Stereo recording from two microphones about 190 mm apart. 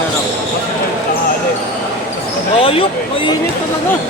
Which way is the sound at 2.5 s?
30° left (ahead or behind).